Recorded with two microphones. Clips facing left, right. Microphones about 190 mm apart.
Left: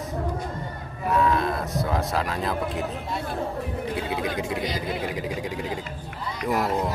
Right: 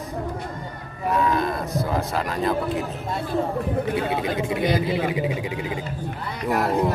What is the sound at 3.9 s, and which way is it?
Speech, 55° right (ahead or behind).